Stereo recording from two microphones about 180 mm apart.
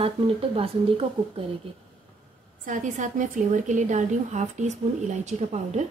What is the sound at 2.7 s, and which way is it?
A woman's voice, 45° right (ahead or behind).